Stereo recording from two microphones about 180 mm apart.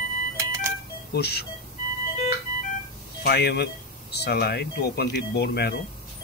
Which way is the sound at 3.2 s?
65° left (ahead or behind).